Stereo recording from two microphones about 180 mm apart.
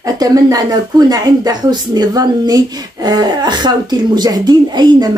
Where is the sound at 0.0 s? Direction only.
20° right (ahead or behind).